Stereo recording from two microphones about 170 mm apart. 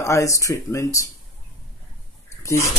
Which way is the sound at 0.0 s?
20° left (ahead or behind).